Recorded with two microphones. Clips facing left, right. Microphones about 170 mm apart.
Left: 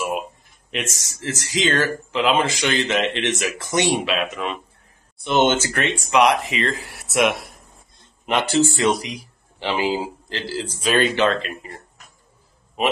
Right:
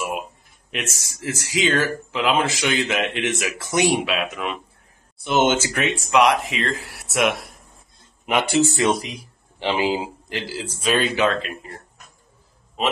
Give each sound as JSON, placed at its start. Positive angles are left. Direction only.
{"t": 0.7, "sound": "speech", "side_deg": -5}
{"t": 8.3, "sound": "speech", "side_deg": -10}
{"t": 10.8, "sound": "speech", "side_deg": 0}